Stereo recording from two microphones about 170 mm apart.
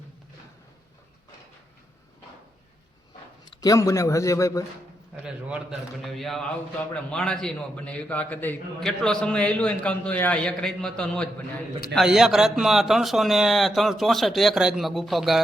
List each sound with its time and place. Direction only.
3.4 s a man's voice: 25° left (ahead or behind)
5.2 s a man's voice: 5° right (ahead or behind)